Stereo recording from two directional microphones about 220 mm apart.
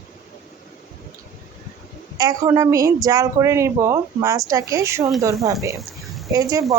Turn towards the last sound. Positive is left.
turn(degrees=-15)  # may be behind; listen again after turning